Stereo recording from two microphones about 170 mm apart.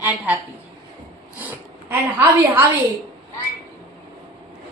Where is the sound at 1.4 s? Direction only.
10° right (ahead or behind).